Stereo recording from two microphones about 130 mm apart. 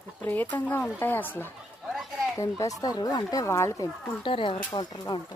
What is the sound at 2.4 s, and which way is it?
Speech, 25° left (ahead or behind).